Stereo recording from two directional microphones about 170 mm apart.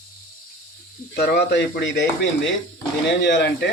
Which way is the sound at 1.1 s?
65° left (ahead or behind).